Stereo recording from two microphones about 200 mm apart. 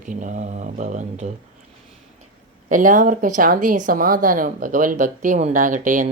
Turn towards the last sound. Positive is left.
turn(degrees=-40)  # may be behind; listen again after turning